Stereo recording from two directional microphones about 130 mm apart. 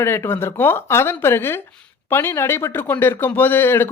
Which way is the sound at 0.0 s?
20° left (ahead or behind).